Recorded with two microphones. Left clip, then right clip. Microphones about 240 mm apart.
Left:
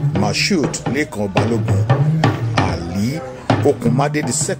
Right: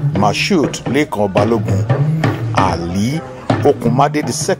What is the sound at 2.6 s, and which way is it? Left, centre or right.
Speech, centre.